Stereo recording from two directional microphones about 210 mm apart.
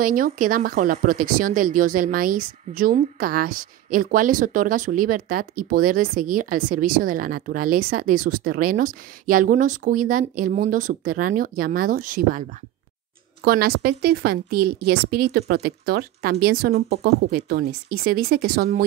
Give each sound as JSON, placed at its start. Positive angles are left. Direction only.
{"t": 0.0, "sound": "a woman's voice", "side_deg": -40}